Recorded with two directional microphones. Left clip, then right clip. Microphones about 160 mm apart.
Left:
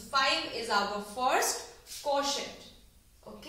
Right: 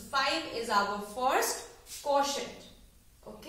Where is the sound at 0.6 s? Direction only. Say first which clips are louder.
Right 2 dB; 15° left (ahead or behind).